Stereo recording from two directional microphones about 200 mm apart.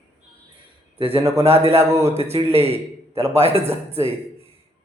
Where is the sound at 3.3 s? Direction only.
30° right (ahead or behind).